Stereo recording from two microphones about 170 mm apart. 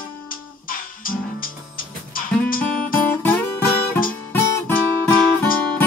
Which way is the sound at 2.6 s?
10° left (ahead or behind).